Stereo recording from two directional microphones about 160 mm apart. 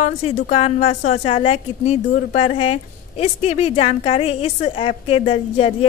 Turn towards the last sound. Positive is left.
turn(degrees=40)  # may be behind; listen again after turning